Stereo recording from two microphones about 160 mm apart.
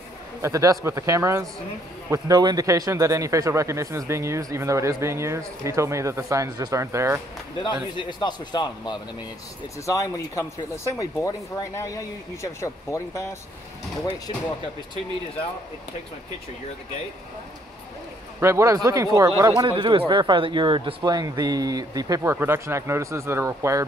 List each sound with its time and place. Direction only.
0.4 s speech: 20° right (ahead or behind)
8.0 s speech: 30° left (ahead or behind)
18.4 s speech: 20° right (ahead or behind)